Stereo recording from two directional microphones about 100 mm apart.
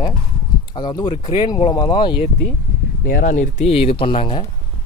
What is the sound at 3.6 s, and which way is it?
Speech, 80° left.